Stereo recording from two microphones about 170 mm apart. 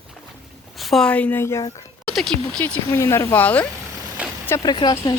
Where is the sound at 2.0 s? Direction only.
5° left (ahead or behind).